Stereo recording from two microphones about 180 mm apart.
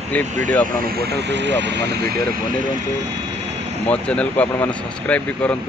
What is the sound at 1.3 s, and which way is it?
Speech, 75° right (ahead or behind).